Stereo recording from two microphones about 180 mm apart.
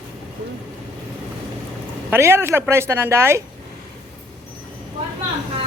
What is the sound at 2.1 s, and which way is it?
A woman's voice, 15° right (ahead or behind).